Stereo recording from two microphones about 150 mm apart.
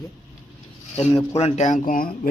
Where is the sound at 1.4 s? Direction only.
55° left (ahead or behind).